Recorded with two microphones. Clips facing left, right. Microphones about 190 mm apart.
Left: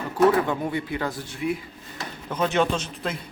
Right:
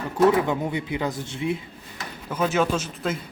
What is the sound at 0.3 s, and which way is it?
Speech, 15° right (ahead or behind).